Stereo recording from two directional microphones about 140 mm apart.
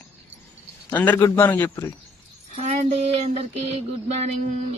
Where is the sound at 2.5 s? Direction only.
55° right (ahead or behind).